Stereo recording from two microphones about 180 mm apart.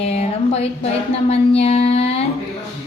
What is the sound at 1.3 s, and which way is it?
Music, 35° left (ahead or behind).